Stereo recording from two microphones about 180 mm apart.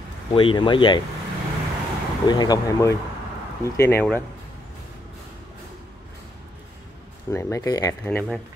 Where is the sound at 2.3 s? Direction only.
20° left (ahead or behind).